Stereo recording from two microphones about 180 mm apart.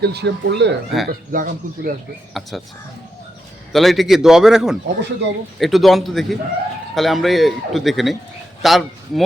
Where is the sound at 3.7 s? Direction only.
Centre (ahead or behind).